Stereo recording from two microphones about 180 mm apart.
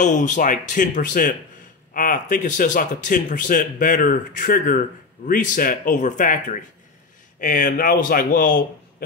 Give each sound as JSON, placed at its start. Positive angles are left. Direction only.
{"t": 0.0, "sound": "speech", "side_deg": 45}